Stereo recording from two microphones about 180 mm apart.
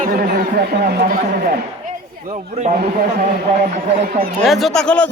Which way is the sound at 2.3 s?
40° right (ahead or behind).